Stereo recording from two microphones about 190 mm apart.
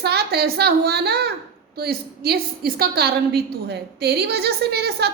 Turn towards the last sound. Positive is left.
turn(degrees=-60)  # may be behind; listen again after turning